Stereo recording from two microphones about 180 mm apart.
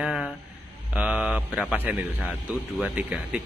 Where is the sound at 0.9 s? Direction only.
5° right (ahead or behind).